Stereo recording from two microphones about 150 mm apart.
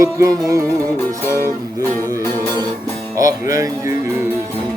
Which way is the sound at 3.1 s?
20° right (ahead or behind).